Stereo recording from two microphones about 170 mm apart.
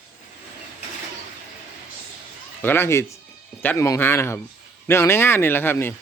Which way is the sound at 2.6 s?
15° left (ahead or behind).